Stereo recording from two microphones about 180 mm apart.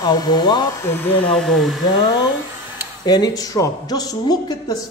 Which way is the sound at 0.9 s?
10° left (ahead or behind).